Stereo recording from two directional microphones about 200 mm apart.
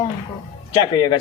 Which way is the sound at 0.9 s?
20° left (ahead or behind).